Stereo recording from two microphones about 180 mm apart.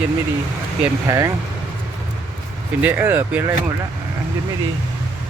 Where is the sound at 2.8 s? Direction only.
10° right (ahead or behind).